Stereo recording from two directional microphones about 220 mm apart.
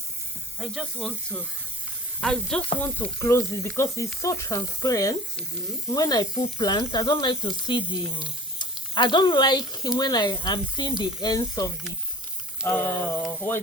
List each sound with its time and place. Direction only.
0.6 s speech: 5° right (ahead or behind)
2.2 s speech: 5° left (ahead or behind)